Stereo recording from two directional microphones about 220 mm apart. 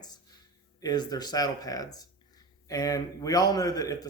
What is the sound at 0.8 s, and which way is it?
Speech, 15° left (ahead or behind).